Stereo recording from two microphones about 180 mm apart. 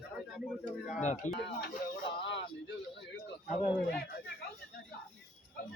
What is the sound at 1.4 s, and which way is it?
Speech, 75° left (ahead or behind).